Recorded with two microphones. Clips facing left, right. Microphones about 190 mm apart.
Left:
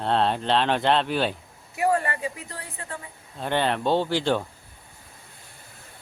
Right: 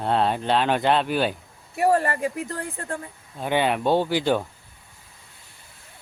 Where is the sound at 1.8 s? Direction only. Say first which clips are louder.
Right 3 dB; 35° right (ahead or behind).